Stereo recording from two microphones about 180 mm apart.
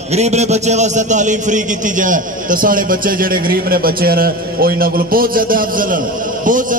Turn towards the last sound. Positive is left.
turn(degrees=-50)  # may be behind; listen again after turning